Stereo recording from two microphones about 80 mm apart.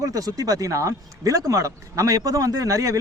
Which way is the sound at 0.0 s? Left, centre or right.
Right.